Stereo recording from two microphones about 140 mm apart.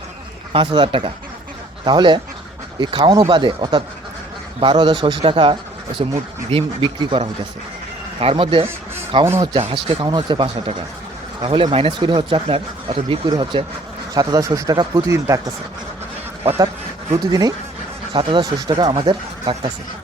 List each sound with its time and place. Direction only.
0.5 s speech: 35° right (ahead or behind)
17.1 s speech: 30° right (ahead or behind)